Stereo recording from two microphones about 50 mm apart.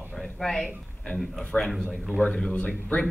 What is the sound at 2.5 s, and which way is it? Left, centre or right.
Speech, left.